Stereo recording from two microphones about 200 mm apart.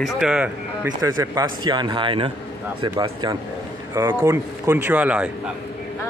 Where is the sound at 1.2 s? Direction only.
15° right (ahead or behind).